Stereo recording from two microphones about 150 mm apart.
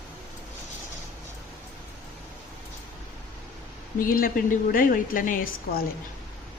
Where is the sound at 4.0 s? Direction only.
70° left (ahead or behind).